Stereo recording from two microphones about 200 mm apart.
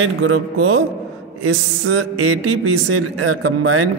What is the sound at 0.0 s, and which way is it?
A man's voice, 90° right.